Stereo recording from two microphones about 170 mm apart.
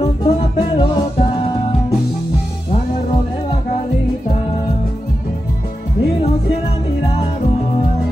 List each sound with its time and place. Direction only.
0.0 s music: 30° left (ahead or behind)